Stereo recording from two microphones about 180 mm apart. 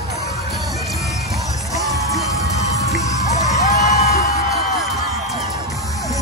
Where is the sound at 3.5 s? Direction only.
20° left (ahead or behind).